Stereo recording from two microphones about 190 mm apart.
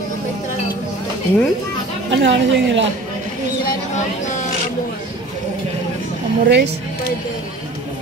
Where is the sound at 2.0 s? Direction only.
70° right (ahead or behind).